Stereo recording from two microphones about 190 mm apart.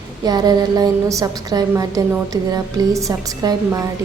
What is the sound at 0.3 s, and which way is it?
A woman's voice, 20° right (ahead or behind).